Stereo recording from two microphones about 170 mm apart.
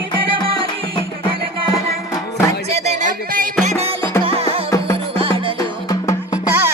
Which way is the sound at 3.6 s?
40° right (ahead or behind).